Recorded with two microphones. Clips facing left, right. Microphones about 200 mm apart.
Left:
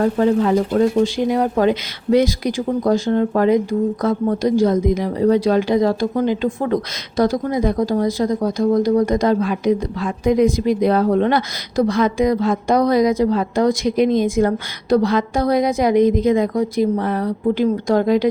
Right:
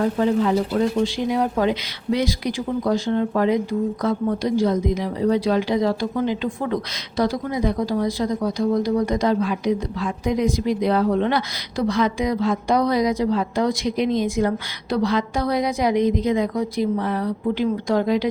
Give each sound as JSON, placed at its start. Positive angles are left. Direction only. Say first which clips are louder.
{"t": 0.0, "sound": "a woman's voice", "louder": "left 3 dB", "side_deg": 50}